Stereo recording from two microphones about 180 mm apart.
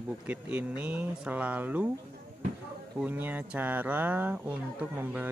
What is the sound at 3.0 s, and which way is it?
Speech, 10° right (ahead or behind).